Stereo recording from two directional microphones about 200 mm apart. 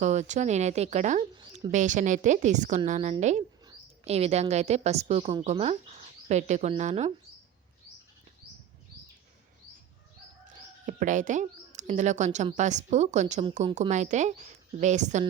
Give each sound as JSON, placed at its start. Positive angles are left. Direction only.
{"t": 0.0, "sound": "a woman's voice", "side_deg": -35}
{"t": 10.8, "sound": "speech", "side_deg": -40}